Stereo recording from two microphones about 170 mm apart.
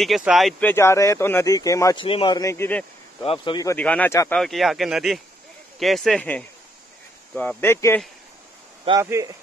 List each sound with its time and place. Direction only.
0.0 s speech: centre (ahead or behind); by 2.0 s 20° left (ahead or behind)
2.0 s speech: 30° left (ahead or behind); by 3.3 s 10° left (ahead or behind)
3.3 s speech: 30° left (ahead or behind)
3.6 s speech: 10° left (ahead or behind)
4.4 s speech: centre (ahead or behind)
9.0 s speech: 15° right (ahead or behind)